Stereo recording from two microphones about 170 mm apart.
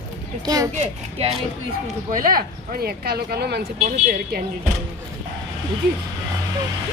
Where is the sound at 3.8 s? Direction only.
55° right (ahead or behind).